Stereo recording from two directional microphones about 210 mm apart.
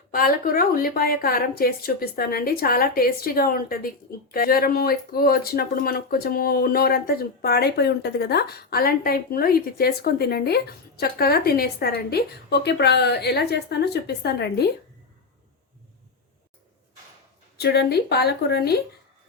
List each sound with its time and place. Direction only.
0.1 s a woman's voice: 45° left (ahead or behind)
17.6 s a woman's voice: 50° left (ahead or behind)